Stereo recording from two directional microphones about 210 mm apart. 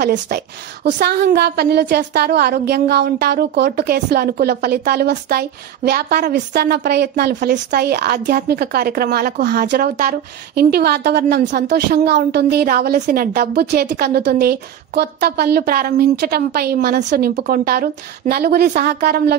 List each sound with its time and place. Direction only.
0.0 s a woman's voice: 50° right (ahead or behind)